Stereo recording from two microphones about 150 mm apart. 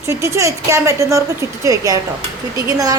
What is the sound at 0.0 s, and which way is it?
A woman's voice, 20° right (ahead or behind).